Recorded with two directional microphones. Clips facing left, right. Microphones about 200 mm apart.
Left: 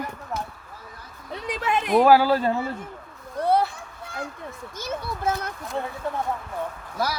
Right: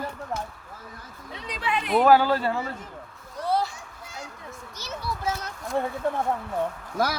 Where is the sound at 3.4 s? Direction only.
55° left (ahead or behind).